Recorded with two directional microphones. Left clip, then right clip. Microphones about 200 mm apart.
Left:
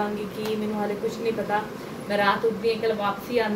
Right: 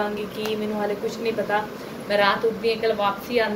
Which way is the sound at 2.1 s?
15° left (ahead or behind).